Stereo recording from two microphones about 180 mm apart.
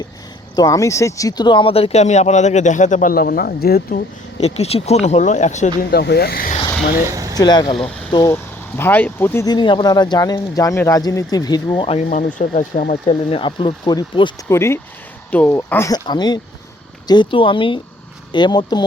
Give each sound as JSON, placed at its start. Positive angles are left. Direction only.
{"t": 0.5, "sound": "speech", "side_deg": 20}
{"t": 4.4, "sound": "speech", "side_deg": 35}
{"t": 5.9, "sound": "speech", "side_deg": 65}
{"t": 7.1, "sound": "vehicle", "side_deg": -20}
{"t": 7.3, "sound": "speech", "side_deg": 25}
{"t": 11.8, "sound": "speech", "side_deg": 35}
{"t": 12.9, "sound": "speech", "side_deg": 30}
{"t": 14.5, "sound": "speech", "side_deg": 15}